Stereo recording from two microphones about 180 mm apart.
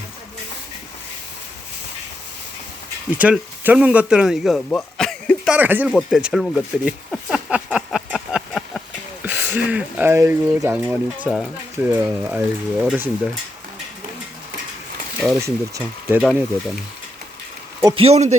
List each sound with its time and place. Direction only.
3.2 s speech: 5° right (ahead or behind)
5.5 s speech: 10° right (ahead or behind)
7.9 s a sound: centre (ahead or behind)
9.2 s speech: 10° right (ahead or behind)
15.4 s speech: 15° right (ahead or behind)
17.9 s speech: 35° right (ahead or behind)